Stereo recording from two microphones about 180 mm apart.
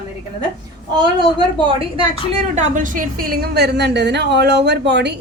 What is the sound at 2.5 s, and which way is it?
A woman's voice, 45° right (ahead or behind).